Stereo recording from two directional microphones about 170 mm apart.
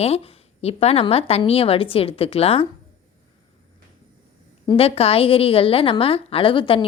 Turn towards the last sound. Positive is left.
turn(degrees=30)  # may be behind; listen again after turning